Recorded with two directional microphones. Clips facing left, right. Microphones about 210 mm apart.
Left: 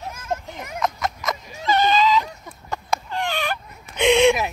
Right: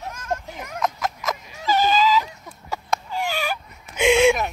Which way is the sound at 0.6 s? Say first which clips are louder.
Left 1 dB; centre (ahead or behind).